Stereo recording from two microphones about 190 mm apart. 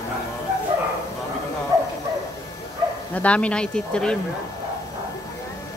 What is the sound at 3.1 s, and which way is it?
Speech, 5° left (ahead or behind).